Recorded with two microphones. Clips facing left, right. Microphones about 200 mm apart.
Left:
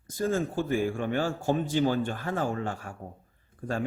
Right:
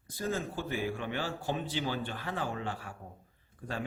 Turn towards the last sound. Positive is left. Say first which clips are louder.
# left 7 dB
turn(degrees=45)  # may be behind; listen again after turning